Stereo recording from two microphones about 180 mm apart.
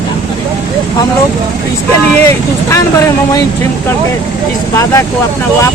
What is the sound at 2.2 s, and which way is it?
Speech, 15° left (ahead or behind).